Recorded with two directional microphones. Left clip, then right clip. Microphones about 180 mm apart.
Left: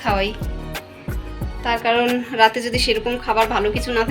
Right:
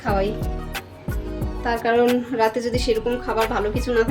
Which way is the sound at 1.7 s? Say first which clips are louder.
Left 3 dB; 20° right (ahead or behind).